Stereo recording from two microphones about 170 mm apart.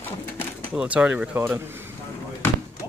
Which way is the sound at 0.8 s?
5° right (ahead or behind).